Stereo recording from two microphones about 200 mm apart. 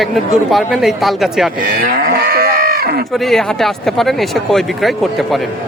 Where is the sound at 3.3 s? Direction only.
Centre (ahead or behind).